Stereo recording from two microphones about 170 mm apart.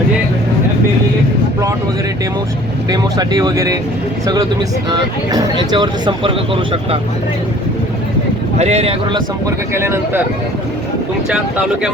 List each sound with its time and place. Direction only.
2.9 s speech: 25° right (ahead or behind)
4.9 s speech: 25° right (ahead or behind)
8.5 s speech: 40° right (ahead or behind)
9.7 s speech: 15° right (ahead or behind)
11.3 s speech: 5° right (ahead or behind)